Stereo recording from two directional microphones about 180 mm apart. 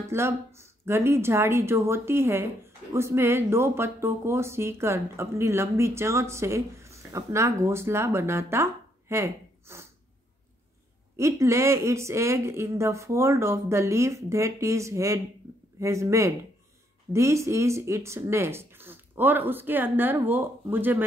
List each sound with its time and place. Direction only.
0.1 s speech: 15° right (ahead or behind)
11.1 s speech: 15° right (ahead or behind)